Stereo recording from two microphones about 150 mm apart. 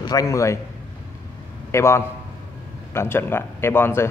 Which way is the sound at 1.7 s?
20° left (ahead or behind).